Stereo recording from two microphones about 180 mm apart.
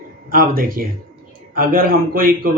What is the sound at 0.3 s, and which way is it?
Speech, 50° right (ahead or behind).